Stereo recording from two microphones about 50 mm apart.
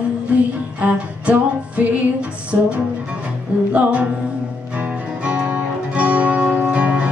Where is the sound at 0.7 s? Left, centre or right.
Right.